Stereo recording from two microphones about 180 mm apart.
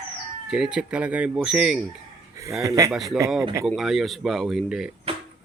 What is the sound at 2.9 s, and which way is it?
Speech, centre (ahead or behind).